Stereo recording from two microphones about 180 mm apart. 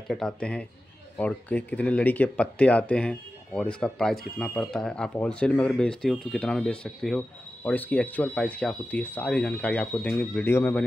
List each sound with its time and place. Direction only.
0.1 s speech: 5° left (ahead or behind)